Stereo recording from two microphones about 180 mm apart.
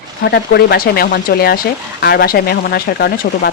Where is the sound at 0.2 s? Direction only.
65° left (ahead or behind).